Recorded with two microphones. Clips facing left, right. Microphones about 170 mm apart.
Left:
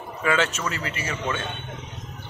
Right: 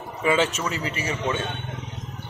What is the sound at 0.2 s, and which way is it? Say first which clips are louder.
A man's voice: right 2 dB; 10° right (ahead or behind).